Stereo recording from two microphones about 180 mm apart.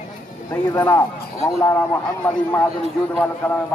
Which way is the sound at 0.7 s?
15° left (ahead or behind).